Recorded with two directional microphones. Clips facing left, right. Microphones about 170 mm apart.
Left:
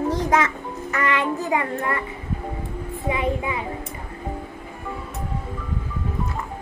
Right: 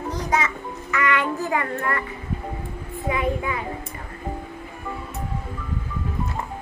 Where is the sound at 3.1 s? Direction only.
20° left (ahead or behind).